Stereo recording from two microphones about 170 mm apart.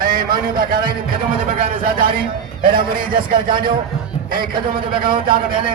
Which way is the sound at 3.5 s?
30° right (ahead or behind).